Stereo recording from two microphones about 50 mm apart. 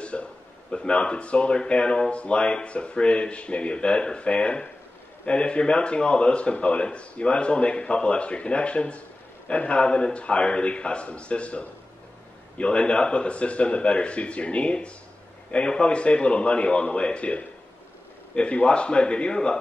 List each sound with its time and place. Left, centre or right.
0.0 s speech: left